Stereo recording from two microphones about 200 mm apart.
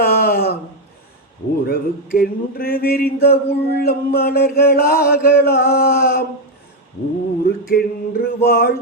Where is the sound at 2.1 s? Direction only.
50° left (ahead or behind).